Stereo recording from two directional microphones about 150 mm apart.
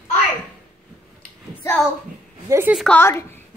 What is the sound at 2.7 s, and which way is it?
Speech, 5° left (ahead or behind).